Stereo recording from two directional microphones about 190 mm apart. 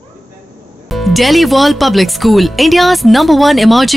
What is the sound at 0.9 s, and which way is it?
Speech, centre (ahead or behind).